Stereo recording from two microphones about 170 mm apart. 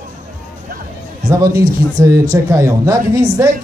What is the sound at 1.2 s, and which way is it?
A man's voice, 20° right (ahead or behind).